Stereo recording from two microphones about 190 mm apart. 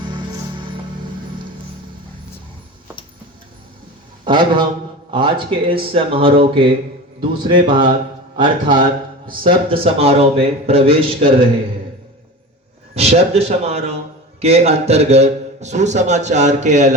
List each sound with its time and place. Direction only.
0.0 s music: 25° right (ahead or behind)
4.2 s a man's voice: 25° right (ahead or behind)
12.9 s a man's voice: 35° right (ahead or behind)